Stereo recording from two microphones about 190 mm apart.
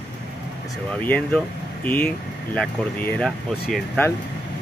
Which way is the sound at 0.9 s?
5° left (ahead or behind).